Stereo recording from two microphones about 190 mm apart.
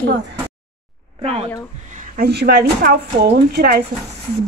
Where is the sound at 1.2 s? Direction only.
30° right (ahead or behind).